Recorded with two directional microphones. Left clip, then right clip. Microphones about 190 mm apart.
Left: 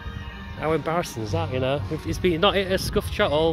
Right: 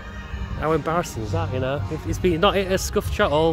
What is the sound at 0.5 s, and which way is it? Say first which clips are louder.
Speech: right 2 dB; 5° left (ahead or behind).